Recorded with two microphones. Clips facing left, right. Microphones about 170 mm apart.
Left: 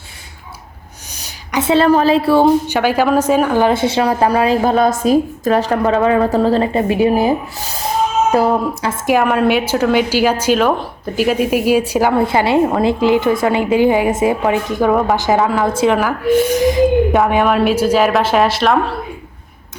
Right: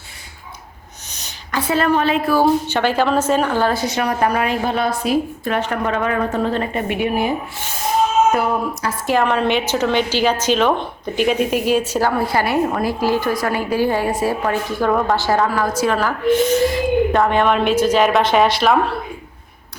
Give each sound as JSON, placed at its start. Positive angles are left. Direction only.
{"t": 1.5, "sound": "a woman's voice", "side_deg": 25}
{"t": 1.9, "sound": "speech", "side_deg": 35}
{"t": 2.6, "sound": "a woman's voice", "side_deg": 10}
{"t": 9.0, "sound": "a woman's voice", "side_deg": 10}
{"t": 16.0, "sound": "a woman's voice", "side_deg": 10}
{"t": 17.2, "sound": "a woman's voice", "side_deg": 5}